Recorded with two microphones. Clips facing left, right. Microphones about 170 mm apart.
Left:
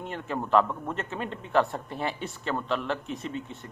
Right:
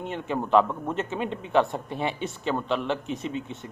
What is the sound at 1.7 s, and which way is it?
Speech, 20° right (ahead or behind).